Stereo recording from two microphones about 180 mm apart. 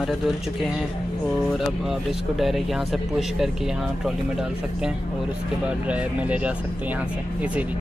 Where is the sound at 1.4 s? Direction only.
Centre (ahead or behind).